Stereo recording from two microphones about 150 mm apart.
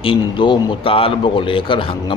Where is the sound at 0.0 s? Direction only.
35° left (ahead or behind).